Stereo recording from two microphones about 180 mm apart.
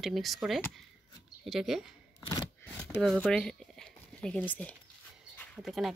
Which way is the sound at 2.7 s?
5° left (ahead or behind).